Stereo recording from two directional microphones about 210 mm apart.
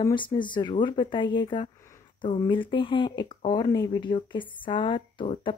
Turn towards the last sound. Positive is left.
turn(degrees=25)  # may be behind; listen again after turning